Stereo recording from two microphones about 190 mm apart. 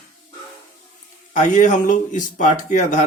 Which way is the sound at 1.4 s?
40° left (ahead or behind).